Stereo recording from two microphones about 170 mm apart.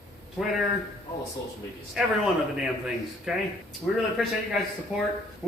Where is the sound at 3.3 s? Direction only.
5° right (ahead or behind).